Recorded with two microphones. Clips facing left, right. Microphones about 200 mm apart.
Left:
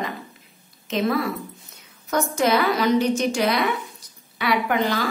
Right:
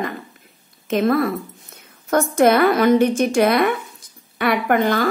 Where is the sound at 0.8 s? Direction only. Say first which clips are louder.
Right 5 dB; 50° right (ahead or behind).